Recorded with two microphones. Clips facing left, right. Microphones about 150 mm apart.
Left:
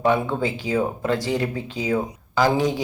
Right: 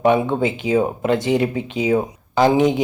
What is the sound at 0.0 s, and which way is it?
Speech, 20° right (ahead or behind).